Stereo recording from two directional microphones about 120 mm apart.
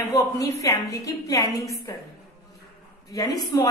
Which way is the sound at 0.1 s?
25° left (ahead or behind).